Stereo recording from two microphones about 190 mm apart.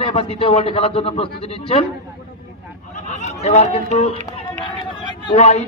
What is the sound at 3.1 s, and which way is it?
Speech, 35° left (ahead or behind).